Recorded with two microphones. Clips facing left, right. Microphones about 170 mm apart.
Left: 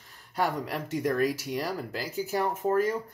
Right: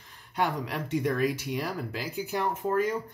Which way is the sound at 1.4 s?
40° left (ahead or behind).